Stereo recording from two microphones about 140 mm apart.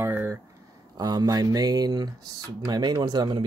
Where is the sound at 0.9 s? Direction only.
30° right (ahead or behind).